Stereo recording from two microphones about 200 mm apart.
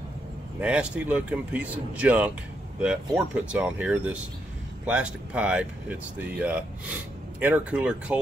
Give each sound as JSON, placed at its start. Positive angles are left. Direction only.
{"t": 0.6, "sound": "speech", "side_deg": -5}